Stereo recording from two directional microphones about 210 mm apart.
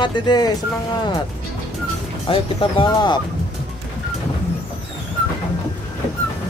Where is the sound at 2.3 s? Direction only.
25° left (ahead or behind).